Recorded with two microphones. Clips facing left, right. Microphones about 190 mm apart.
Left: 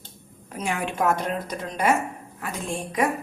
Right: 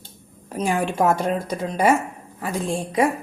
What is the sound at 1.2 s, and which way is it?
Speech, 30° right (ahead or behind).